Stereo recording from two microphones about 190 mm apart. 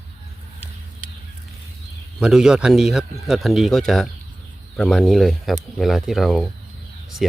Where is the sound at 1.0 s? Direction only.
45° right (ahead or behind).